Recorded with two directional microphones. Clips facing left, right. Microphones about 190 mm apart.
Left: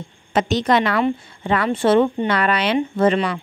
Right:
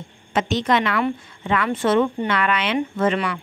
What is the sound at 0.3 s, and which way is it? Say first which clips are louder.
A woman's voice: left 3 dB; 40° left (ahead or behind).